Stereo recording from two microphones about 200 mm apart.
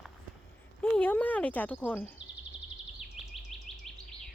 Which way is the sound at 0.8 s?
5° left (ahead or behind).